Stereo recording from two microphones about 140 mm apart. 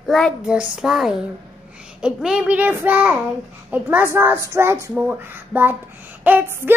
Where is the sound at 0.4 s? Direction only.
5° right (ahead or behind).